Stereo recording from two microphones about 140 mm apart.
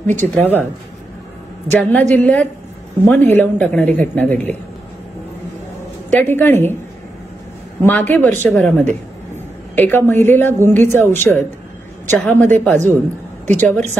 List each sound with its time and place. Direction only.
0.0 s speech: 60° right (ahead or behind)
0.3 s a woman's voice: 10° left (ahead or behind)
1.8 s a woman's voice: 10° left (ahead or behind)
6.0 s a woman's voice: 15° left (ahead or behind)
7.8 s a woman's voice: 10° left (ahead or behind)